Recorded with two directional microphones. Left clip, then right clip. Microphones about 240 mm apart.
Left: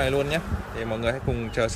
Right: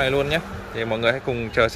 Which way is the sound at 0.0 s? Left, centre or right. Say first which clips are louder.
Right 3 dB; centre.